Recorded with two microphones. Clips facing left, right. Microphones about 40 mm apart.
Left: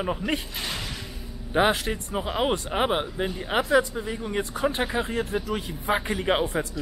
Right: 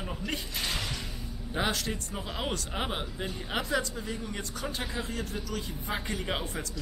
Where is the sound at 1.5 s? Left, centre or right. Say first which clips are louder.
Left 9 dB; left.